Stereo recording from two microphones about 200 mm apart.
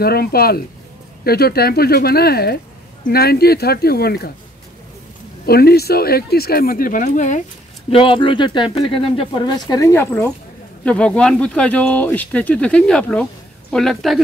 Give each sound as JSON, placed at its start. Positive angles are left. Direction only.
{"t": 0.0, "sound": "speech", "side_deg": 50}
{"t": 5.5, "sound": "speech", "side_deg": 50}
{"t": 7.9, "sound": "speech", "side_deg": 25}